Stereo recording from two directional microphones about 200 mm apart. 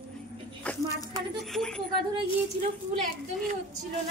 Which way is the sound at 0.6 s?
5° left (ahead or behind).